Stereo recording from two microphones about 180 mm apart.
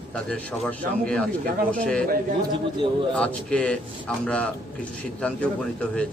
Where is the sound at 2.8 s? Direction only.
25° right (ahead or behind).